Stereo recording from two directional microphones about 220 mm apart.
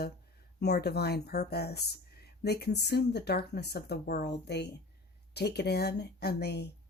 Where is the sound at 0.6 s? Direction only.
50° left (ahead or behind).